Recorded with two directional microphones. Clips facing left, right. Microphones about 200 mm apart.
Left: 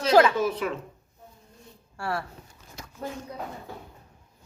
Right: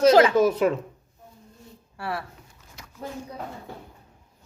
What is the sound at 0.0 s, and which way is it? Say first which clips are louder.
Speech: right 4 dB; 45° right (ahead or behind).